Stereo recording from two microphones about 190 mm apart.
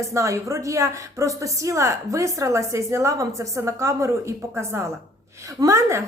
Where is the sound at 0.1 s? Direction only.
15° right (ahead or behind).